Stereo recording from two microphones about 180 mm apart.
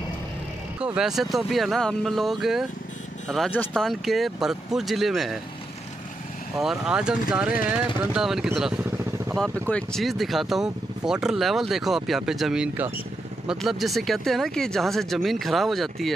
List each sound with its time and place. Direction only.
0.7 s speech: 5° right (ahead or behind)
6.6 s speech: 5° right (ahead or behind)